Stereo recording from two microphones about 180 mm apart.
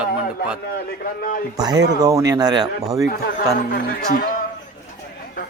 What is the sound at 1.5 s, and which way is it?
A man's voice, 20° right (ahead or behind).